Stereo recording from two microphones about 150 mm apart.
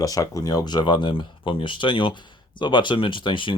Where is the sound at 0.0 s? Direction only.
25° left (ahead or behind).